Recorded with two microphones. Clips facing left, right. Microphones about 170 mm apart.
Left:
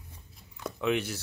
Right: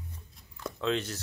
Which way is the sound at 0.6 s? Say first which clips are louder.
Left 2 dB; 10° left (ahead or behind).